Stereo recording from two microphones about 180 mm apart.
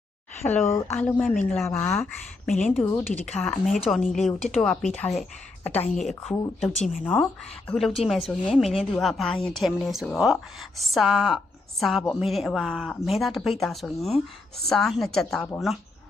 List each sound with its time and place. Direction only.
0.4 s a woman's voice: 10° left (ahead or behind)
2.5 s a woman's voice: centre (ahead or behind)